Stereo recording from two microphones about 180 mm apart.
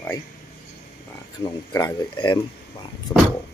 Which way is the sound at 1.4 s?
20° left (ahead or behind).